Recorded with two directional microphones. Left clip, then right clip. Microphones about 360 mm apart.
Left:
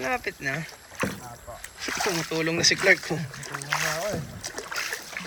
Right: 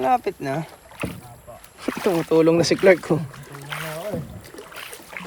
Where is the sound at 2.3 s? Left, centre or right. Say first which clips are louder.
Right 8 dB; centre.